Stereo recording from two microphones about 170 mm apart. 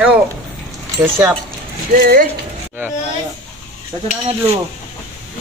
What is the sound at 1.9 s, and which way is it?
Speech, 60° right (ahead or behind).